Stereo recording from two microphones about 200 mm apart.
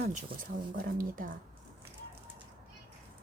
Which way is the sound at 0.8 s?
45° right (ahead or behind).